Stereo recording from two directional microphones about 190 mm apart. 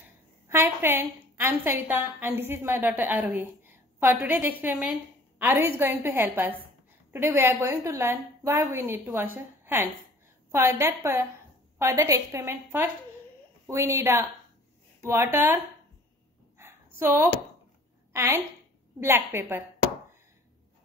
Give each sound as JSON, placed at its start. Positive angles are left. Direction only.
{"t": 0.5, "sound": "a woman's voice", "side_deg": -10}
{"t": 16.5, "sound": "a sound", "side_deg": -10}
{"t": 18.1, "sound": "a woman's voice", "side_deg": -15}